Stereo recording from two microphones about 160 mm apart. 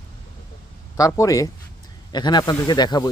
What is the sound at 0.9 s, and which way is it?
A man's voice, 20° left (ahead or behind).